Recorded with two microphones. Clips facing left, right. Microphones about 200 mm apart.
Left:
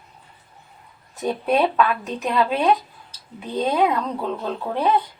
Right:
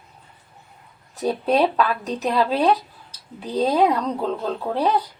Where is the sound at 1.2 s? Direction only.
35° right (ahead or behind).